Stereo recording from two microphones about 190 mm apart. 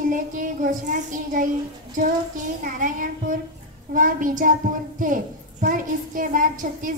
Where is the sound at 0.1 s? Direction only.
45° right (ahead or behind).